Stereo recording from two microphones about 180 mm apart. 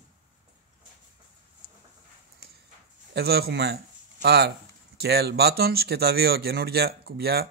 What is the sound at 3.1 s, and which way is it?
Speech, 60° right (ahead or behind).